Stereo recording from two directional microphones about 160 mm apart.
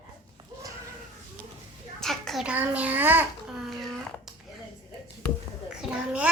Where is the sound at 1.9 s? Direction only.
5° left (ahead or behind).